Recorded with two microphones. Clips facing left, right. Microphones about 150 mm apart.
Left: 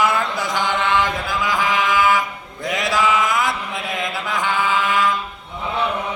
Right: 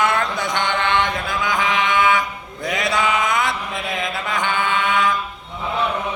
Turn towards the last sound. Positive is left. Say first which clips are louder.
# even
turn(degrees=0)  # may be behind; listen again after turning